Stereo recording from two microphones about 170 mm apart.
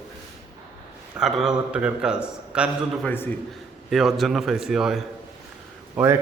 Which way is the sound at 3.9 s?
Centre (ahead or behind).